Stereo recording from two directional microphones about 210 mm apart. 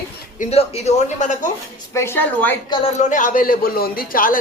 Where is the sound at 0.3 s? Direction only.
30° left (ahead or behind).